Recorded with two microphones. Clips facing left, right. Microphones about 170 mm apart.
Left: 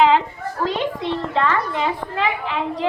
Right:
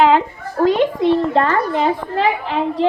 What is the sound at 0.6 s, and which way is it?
A child's voice, 50° right (ahead or behind).